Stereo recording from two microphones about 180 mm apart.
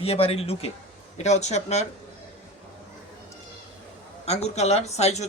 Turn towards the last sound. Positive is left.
turn(degrees=35)  # may be behind; listen again after turning